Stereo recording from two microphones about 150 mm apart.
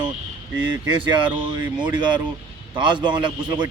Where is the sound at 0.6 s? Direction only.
30° right (ahead or behind).